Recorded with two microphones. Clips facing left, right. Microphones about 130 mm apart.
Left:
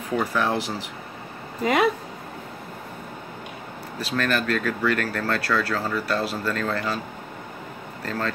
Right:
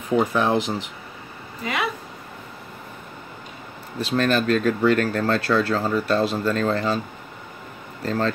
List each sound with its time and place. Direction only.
0.1 s speech: 20° right (ahead or behind)
1.6 s speech: 45° left (ahead or behind)
4.0 s speech: 20° right (ahead or behind)
8.0 s speech: 25° right (ahead or behind)